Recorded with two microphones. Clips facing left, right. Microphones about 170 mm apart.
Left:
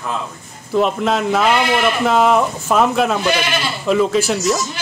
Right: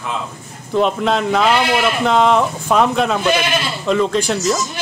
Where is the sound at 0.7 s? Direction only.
5° left (ahead or behind).